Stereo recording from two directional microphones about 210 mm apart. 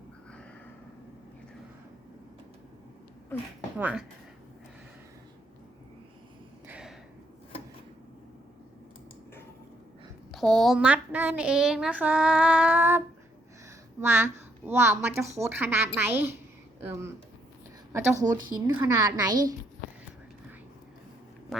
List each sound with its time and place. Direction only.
3.8 s a woman's voice: 5° right (ahead or behind)
6.7 s a sound: 5° right (ahead or behind)
10.3 s child singing: centre (ahead or behind)
14.0 s a woman's voice: 10° right (ahead or behind)
21.5 s quack: centre (ahead or behind)